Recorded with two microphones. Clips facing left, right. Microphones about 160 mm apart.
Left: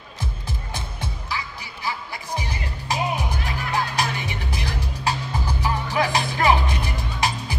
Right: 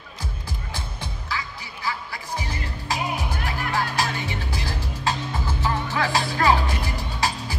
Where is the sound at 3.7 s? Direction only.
20° left (ahead or behind).